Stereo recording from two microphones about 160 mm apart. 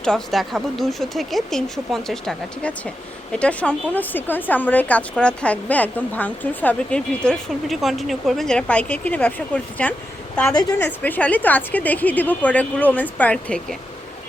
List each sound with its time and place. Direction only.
0.0 s a woman's voice: 5° left (ahead or behind)
10.5 s speech: 25° left (ahead or behind)
11.0 s a woman's voice: 10° left (ahead or behind)